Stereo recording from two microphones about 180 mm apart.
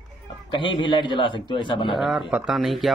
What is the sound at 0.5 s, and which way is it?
A man's voice, 25° left (ahead or behind).